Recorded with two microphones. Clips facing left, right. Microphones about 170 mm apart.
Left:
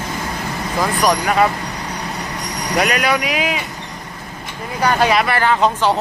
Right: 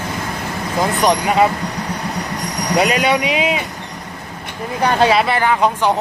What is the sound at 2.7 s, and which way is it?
Speech, 25° right (ahead or behind).